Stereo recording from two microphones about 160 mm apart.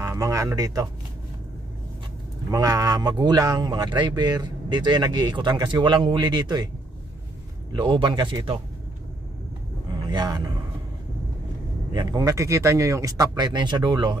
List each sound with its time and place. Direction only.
0.0 s music: 20° right (ahead or behind)
2.5 s speech: 20° right (ahead or behind)
7.7 s speech: 30° right (ahead or behind)
9.8 s a sound: 25° right (ahead or behind)
11.9 s speech: 25° right (ahead or behind)